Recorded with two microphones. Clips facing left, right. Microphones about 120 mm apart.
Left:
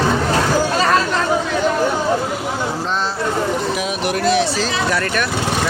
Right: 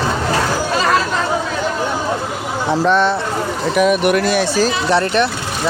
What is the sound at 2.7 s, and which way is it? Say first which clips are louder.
Speech: right 8 dB; 65° right (ahead or behind).